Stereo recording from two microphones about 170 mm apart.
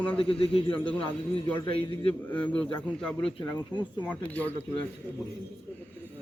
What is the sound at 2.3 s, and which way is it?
A man's voice, 10° left (ahead or behind).